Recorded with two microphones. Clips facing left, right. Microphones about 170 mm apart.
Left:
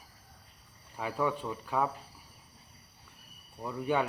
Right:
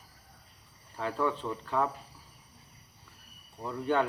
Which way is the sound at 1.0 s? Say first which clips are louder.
Right 1 dB; 10° left (ahead or behind).